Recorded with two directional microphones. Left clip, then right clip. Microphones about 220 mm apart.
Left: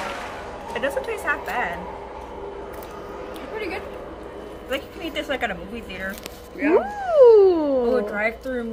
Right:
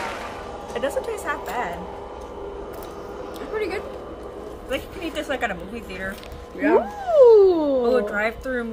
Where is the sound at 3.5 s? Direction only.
25° right (ahead or behind).